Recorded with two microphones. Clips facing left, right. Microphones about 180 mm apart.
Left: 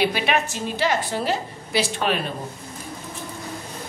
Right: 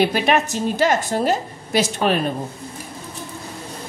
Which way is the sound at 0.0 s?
45° right (ahead or behind).